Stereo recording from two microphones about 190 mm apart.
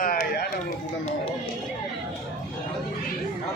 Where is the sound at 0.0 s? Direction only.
45° left (ahead or behind).